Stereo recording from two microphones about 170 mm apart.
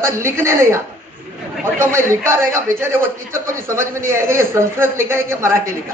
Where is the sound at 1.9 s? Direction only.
15° right (ahead or behind).